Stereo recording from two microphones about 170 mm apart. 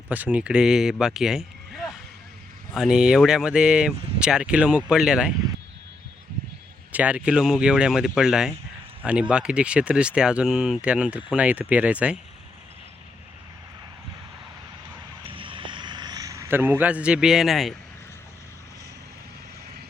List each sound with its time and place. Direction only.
0.1 s speech: 10° right (ahead or behind)
6.9 s speech: 10° right (ahead or behind)
15.2 s a sound: 30° right (ahead or behind); by 17.7 s centre (ahead or behind)